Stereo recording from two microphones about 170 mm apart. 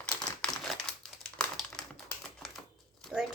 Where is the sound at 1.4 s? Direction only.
5° left (ahead or behind).